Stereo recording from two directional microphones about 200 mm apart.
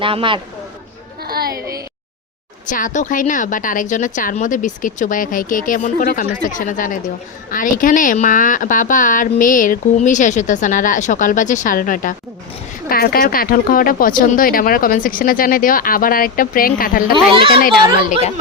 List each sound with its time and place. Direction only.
0.0 s a man's voice: 25° right (ahead or behind)
1.2 s a sound: 50° right (ahead or behind)
2.6 s speech: 40° left (ahead or behind)